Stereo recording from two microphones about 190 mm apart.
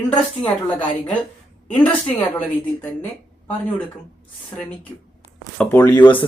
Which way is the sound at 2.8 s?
10° left (ahead or behind).